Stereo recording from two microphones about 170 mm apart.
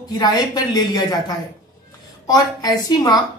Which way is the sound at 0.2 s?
25° left (ahead or behind).